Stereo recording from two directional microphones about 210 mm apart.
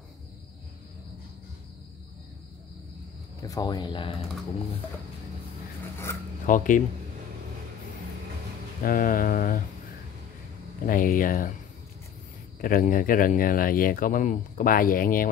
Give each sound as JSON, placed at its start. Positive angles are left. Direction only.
{"t": 3.4, "sound": "speech", "side_deg": 20}
{"t": 6.4, "sound": "speech", "side_deg": 40}
{"t": 8.8, "sound": "speech", "side_deg": 40}
{"t": 10.9, "sound": "speech", "side_deg": 40}
{"t": 12.6, "sound": "speech", "side_deg": 40}